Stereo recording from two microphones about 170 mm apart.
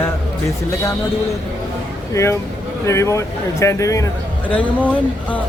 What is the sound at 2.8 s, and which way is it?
Speech, 15° left (ahead or behind).